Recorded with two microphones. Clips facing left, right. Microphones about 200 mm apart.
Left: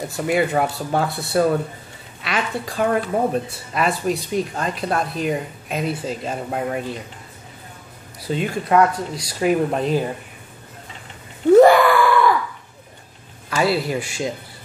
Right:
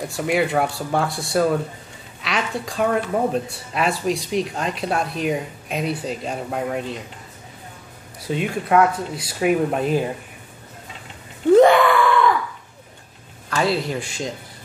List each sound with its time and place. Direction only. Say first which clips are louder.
0.1 s speech: left 1 dB; centre (ahead or behind)
8.3 s speech: even; 5° right (ahead or behind)
11.6 s screaming: left 1 dB; 5° left (ahead or behind)
13.5 s speech: left 2 dB; 5° left (ahead or behind)